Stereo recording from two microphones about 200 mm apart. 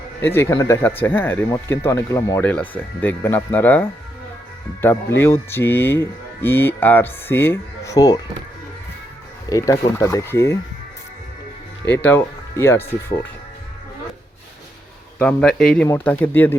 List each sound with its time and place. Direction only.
0.3 s speech: 15° left (ahead or behind)
9.5 s speech: 15° left (ahead or behind)
11.9 s speech: 10° left (ahead or behind)
15.2 s speech: 5° left (ahead or behind)